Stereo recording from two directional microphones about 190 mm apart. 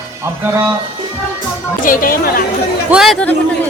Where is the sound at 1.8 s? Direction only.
45° left (ahead or behind).